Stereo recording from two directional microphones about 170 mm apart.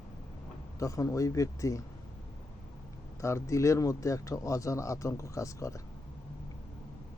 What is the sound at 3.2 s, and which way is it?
Speech, 15° left (ahead or behind).